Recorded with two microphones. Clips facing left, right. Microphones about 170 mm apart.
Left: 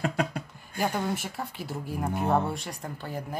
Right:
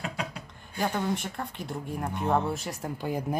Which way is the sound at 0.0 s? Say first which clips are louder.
Left 6 dB; 50° left (ahead or behind).